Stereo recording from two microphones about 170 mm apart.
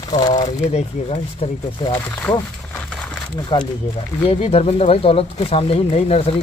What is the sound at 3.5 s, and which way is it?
Speech, 25° left (ahead or behind).